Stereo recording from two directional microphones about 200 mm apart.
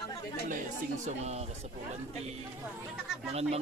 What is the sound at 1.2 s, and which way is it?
Speech, 35° right (ahead or behind).